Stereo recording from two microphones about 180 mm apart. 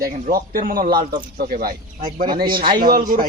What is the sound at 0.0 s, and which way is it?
Speech, 50° right (ahead or behind).